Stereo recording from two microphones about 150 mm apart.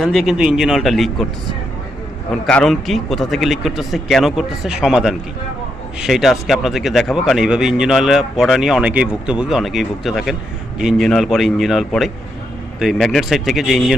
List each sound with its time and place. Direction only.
0.0 s speech: centre (ahead or behind)
2.5 s speech: 5° left (ahead or behind)